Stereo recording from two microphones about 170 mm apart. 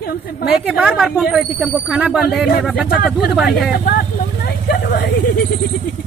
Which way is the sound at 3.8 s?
70° left (ahead or behind).